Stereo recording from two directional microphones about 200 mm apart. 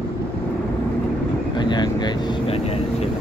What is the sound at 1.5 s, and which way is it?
Vehicle, 20° left (ahead or behind).